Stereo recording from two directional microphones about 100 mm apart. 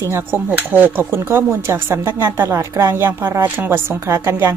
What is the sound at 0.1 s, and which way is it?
Speech, 25° right (ahead or behind).